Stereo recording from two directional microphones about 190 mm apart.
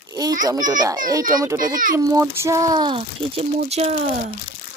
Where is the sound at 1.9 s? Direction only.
15° right (ahead or behind); by 4.0 s 35° right (ahead or behind).